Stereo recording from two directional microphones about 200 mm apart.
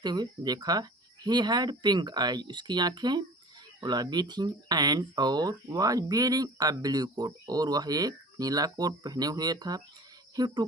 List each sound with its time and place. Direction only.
0.0 s speech: 20° right (ahead or behind)